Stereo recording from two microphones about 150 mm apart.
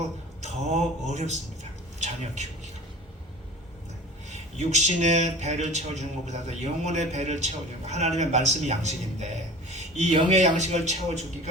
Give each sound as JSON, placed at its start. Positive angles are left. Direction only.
{"t": 0.4, "sound": "a man's voice", "side_deg": -50}
{"t": 4.3, "sound": "a man's voice", "side_deg": -50}